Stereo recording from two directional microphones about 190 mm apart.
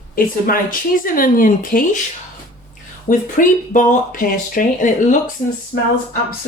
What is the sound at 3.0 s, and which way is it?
Speech, 40° left (ahead or behind).